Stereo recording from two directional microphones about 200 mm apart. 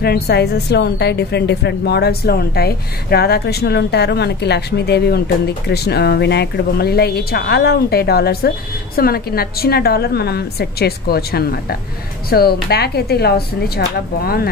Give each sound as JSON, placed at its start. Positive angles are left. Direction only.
{"t": 0.0, "sound": "a woman's voice", "side_deg": 55}